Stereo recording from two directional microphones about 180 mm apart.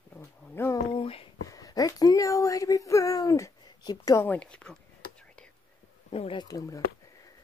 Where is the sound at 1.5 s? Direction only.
20° left (ahead or behind).